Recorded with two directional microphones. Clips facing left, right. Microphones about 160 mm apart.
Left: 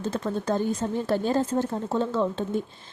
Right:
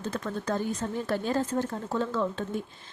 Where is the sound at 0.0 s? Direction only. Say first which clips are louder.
Left 4 dB; 25° left (ahead or behind).